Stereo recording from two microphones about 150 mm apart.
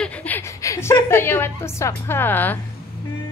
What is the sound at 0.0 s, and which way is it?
A woman's voice, 10° left (ahead or behind).